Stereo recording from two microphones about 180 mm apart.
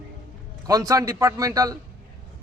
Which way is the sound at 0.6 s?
20° right (ahead or behind).